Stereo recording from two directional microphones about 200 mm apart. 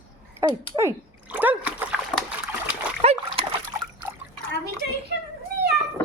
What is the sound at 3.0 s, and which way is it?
Dog, 30° right (ahead or behind).